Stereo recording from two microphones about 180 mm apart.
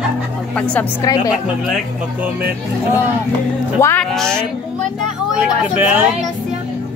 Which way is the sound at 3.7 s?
15° left (ahead or behind).